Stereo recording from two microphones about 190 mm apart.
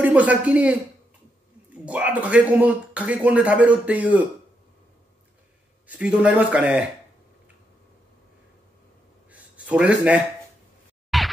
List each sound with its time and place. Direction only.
0.0 s speech: 5° right (ahead or behind)
1.9 s speech: 10° right (ahead or behind)
5.9 s speech: 5° right (ahead or behind)
9.3 s a sound: 5° right (ahead or behind)
11.1 s whack: centre (ahead or behind)